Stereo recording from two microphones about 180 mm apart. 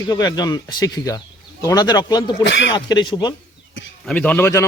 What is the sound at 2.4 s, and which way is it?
Speech, 85° left.